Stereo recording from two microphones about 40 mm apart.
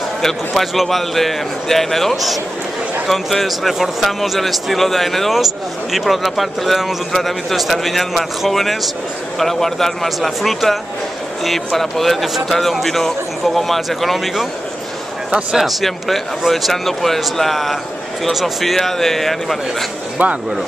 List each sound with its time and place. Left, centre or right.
0.2 s speech: centre
15.5 s speech: centre
20.2 s speech: right